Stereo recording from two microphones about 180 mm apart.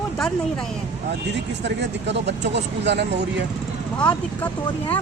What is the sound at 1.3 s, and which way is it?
Speech, 75° right (ahead or behind).